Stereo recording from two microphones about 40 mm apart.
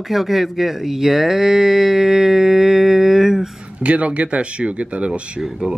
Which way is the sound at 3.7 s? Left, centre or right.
Right.